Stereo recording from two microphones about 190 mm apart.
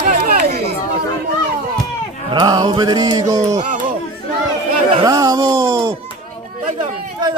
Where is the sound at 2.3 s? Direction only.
25° right (ahead or behind).